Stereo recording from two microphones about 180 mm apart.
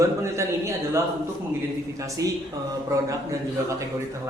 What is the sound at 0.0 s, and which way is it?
A man's voice, 15° right (ahead or behind).